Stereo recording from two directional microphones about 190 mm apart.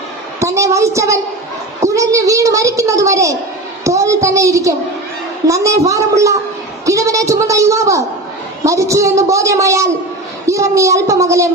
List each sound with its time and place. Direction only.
0.3 s a woman's voice: 15° right (ahead or behind)